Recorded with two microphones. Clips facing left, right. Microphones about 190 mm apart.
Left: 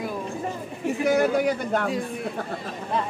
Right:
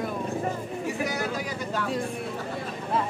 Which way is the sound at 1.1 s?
55° left (ahead or behind).